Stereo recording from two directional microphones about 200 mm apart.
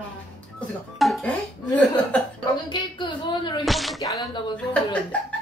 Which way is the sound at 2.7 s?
25° left (ahead or behind).